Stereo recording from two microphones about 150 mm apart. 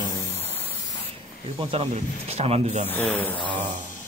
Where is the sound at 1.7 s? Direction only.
40° right (ahead or behind).